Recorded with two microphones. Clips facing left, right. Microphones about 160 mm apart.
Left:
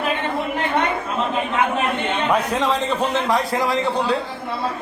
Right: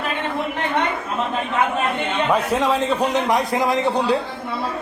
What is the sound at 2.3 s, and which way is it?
A man's voice, 10° right (ahead or behind).